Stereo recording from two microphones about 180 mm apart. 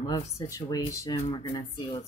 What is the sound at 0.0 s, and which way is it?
Speech, 20° left (ahead or behind).